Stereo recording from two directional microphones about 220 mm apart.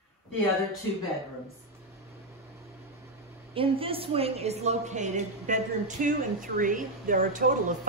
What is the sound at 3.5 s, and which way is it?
A woman's voice, 25° right (ahead or behind).